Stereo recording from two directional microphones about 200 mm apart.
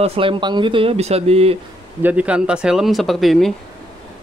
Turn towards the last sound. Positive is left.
turn(degrees=0)  # may be behind; listen again after turning